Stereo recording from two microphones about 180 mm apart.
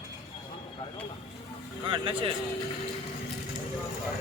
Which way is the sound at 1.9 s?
30° right (ahead or behind).